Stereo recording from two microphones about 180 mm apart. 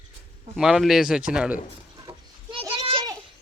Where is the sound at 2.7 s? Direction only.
30° right (ahead or behind).